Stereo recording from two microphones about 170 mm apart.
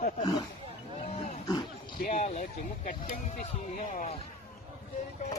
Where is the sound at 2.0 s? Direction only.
45° left (ahead or behind).